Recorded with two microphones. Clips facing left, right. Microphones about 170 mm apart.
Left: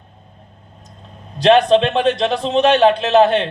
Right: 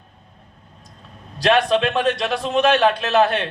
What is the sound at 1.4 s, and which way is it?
A man's voice, 25° left (ahead or behind).